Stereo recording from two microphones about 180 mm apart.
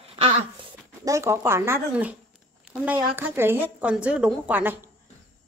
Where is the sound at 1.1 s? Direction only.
15° right (ahead or behind).